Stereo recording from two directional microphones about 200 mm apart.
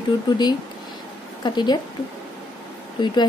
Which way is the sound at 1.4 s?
20° left (ahead or behind).